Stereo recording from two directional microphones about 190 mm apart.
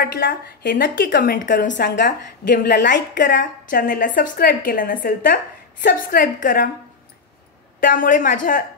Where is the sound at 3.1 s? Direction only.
45° left (ahead or behind).